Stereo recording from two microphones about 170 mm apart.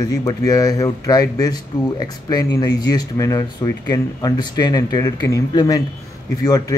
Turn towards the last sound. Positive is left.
turn(degrees=20)  # may be behind; listen again after turning